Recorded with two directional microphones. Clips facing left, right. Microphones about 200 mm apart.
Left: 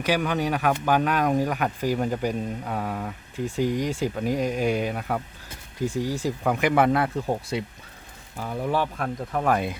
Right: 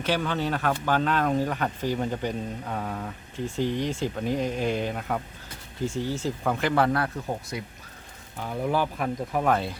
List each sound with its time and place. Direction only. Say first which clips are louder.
0.0 s speech: left 2 dB; 10° left (ahead or behind)
8.4 s speech: even; centre (ahead or behind)